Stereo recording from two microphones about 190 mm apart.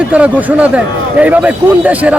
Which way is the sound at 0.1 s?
10° right (ahead or behind).